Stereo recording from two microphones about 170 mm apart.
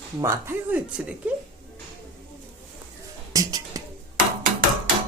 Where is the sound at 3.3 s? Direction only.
20° right (ahead or behind).